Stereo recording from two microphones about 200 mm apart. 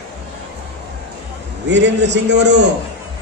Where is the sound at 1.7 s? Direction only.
60° right (ahead or behind).